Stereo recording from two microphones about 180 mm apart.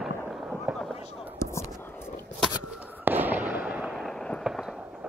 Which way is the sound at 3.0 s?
10° right (ahead or behind).